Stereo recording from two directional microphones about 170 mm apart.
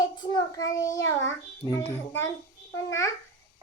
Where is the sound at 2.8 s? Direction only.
20° left (ahead or behind).